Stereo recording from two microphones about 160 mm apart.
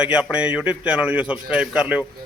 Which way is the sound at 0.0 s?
5° right (ahead or behind).